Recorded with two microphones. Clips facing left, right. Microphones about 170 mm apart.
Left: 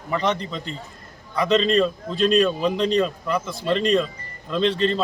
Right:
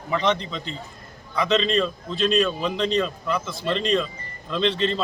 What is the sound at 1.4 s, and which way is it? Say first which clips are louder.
A man's voice: left 3 dB; 10° left (ahead or behind).